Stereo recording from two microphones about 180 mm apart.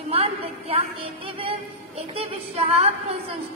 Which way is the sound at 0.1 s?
30° right (ahead or behind).